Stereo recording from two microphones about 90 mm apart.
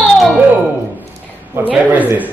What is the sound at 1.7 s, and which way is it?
Speech, 20° right (ahead or behind).